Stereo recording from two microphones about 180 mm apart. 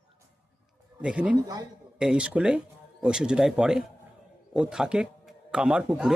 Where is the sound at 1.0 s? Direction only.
5° right (ahead or behind).